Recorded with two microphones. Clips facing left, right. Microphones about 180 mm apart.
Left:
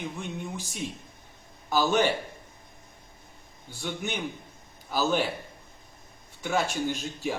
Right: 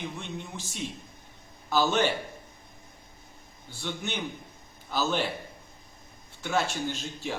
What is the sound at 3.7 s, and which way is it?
A man's voice, 15° left (ahead or behind).